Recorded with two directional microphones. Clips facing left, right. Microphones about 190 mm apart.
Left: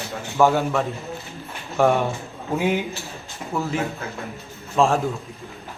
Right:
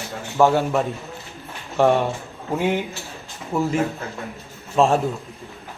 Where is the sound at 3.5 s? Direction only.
10° right (ahead or behind).